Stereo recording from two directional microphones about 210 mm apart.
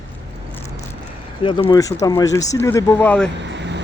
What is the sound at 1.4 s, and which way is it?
Speech, 20° left (ahead or behind).